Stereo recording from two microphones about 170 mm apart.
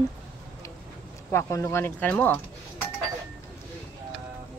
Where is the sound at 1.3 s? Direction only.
15° left (ahead or behind).